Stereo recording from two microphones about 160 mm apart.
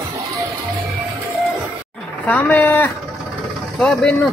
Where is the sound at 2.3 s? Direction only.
10° left (ahead or behind).